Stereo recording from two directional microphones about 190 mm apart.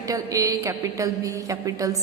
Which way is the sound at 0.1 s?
20° right (ahead or behind).